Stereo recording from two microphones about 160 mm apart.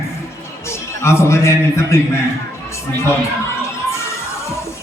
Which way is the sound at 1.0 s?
15° left (ahead or behind).